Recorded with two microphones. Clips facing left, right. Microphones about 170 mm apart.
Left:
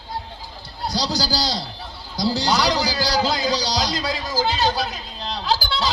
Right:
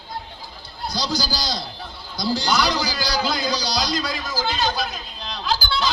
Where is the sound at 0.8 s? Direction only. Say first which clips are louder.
Left 2 dB; 90° left.